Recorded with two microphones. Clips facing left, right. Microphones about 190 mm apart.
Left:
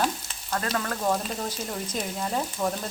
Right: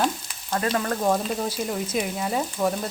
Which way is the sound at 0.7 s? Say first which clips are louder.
Right 4 dB; 30° right (ahead or behind).